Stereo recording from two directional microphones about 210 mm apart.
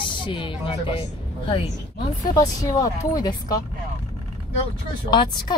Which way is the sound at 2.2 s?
15° left (ahead or behind).